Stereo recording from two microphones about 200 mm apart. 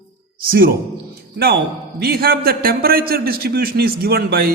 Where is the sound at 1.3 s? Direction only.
55° right (ahead or behind).